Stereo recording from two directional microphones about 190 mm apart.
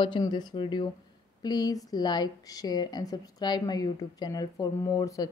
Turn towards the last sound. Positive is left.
turn(degrees=20)  # may be behind; listen again after turning